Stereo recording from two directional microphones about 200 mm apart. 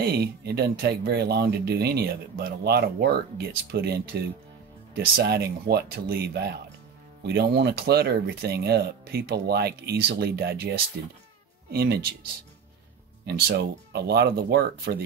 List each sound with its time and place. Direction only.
0.0 s speech: 55° right (ahead or behind)
11.7 s speech: 50° right (ahead or behind)
13.2 s speech: 55° right (ahead or behind)